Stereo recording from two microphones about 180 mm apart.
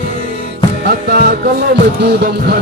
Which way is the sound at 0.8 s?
55° right (ahead or behind).